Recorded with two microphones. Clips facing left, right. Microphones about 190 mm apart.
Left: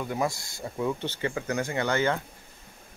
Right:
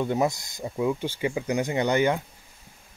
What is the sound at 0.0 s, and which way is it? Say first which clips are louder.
Speech: right 5 dB; 25° right (ahead or behind).